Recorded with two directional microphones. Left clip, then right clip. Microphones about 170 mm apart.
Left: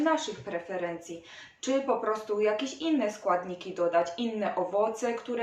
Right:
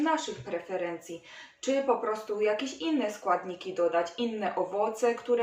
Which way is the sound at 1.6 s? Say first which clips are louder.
Even; 25° left (ahead or behind).